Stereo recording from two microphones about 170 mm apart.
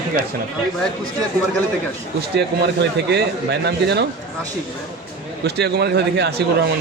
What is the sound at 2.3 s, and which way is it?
Speech, 80° right.